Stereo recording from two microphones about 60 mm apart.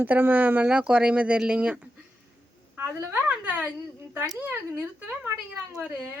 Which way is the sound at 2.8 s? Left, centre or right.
Right.